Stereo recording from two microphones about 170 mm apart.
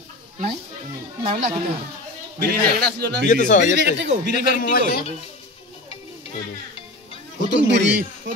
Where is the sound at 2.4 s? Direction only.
70° right (ahead or behind).